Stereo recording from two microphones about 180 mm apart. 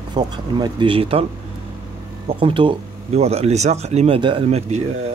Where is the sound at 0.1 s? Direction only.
25° right (ahead or behind).